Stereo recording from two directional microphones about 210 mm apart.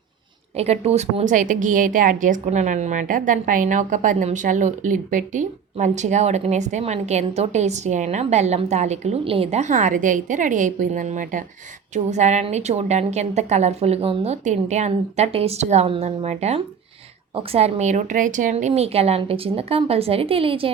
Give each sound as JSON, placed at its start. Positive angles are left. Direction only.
{"t": 0.5, "sound": "a woman's voice", "side_deg": -30}